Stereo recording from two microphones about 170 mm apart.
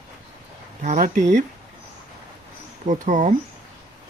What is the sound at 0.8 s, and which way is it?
Speech, 50° right (ahead or behind).